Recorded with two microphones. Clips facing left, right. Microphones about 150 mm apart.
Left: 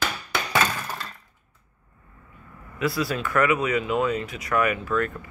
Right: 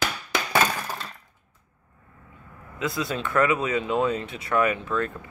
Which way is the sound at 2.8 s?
20° right (ahead or behind).